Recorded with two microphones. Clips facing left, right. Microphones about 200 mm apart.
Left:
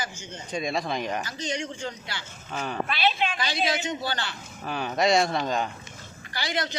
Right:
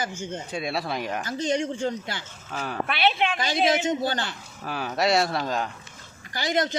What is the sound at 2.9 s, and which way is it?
A man's voice, 60° right (ahead or behind).